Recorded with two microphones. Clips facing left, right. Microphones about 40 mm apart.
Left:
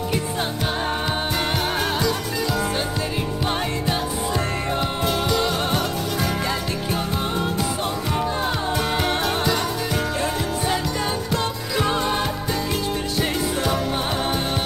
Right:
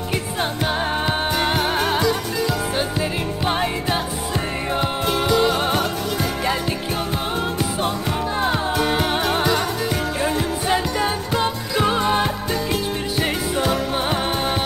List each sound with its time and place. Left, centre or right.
0.1 s music: centre
8.4 s music: centre
10.7 s music: centre